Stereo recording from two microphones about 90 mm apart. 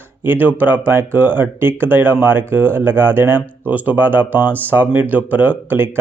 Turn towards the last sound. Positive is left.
turn(degrees=-20)  # may be behind; listen again after turning